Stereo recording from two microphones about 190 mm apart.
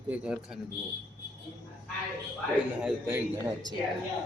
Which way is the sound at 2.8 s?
10° right (ahead or behind).